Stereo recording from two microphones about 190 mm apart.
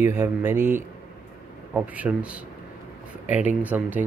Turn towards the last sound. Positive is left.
turn(degrees=-10)  # may be behind; listen again after turning